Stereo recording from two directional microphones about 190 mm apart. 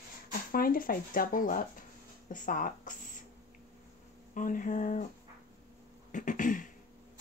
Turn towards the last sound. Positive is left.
turn(degrees=45)  # may be behind; listen again after turning